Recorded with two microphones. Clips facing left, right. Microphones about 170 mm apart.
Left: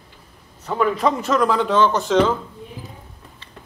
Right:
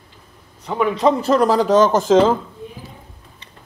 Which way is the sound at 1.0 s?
30° right (ahead or behind).